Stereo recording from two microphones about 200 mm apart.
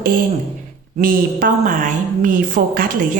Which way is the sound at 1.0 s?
45° right (ahead or behind).